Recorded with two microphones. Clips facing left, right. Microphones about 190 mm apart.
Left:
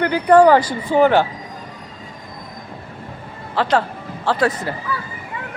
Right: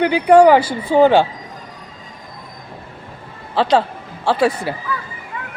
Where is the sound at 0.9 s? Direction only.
20° right (ahead or behind).